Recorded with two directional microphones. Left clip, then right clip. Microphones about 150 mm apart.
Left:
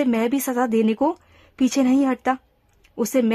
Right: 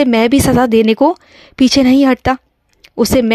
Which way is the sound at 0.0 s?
40° right (ahead or behind).